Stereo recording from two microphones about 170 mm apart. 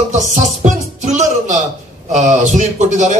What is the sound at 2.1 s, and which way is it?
A man's voice, 45° right (ahead or behind).